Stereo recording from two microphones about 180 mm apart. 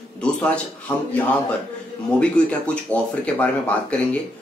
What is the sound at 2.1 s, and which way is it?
Speech, 5° left (ahead or behind).